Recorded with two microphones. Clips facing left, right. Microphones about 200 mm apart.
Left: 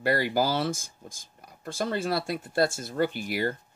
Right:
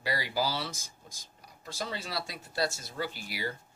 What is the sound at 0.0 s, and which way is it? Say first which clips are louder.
Speech: left 7 dB; 55° left (ahead or behind).